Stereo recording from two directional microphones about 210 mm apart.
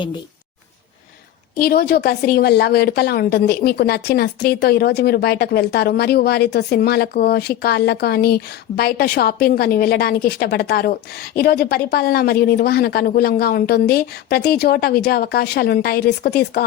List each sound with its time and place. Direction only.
1.5 s a woman's voice: 50° left (ahead or behind)